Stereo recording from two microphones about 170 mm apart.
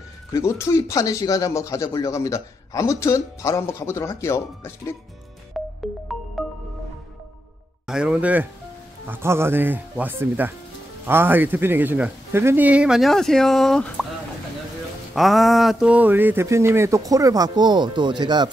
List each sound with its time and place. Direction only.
0.3 s speech: 15° left (ahead or behind)
5.5 s music: centre (ahead or behind)
7.8 s speech: 5° right (ahead or behind)
15.1 s speech: centre (ahead or behind); by 18.5 s 25° right (ahead or behind)